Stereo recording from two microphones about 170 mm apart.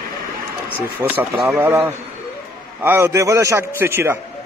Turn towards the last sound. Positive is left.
turn(degrees=-15)  # may be behind; listen again after turning